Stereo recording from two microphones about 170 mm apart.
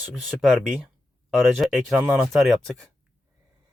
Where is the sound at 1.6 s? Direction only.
Centre (ahead or behind).